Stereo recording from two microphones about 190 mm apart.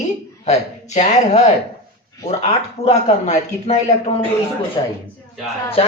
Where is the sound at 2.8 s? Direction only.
35° left (ahead or behind).